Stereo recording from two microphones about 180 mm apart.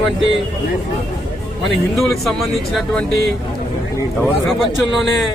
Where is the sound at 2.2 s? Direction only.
Centre (ahead or behind).